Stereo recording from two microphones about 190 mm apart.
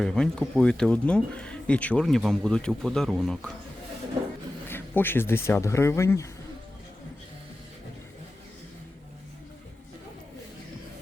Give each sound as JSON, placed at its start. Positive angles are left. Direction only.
{"t": 0.0, "sound": "speech", "side_deg": 5}
{"t": 4.7, "sound": "speech", "side_deg": 10}